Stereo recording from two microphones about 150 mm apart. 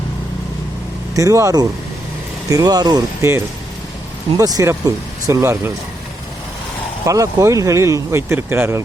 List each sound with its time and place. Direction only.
1.1 s speech: 20° right (ahead or behind)
7.0 s speech: 20° right (ahead or behind)